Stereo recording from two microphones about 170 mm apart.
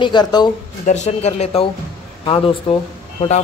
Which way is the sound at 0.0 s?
25° left (ahead or behind).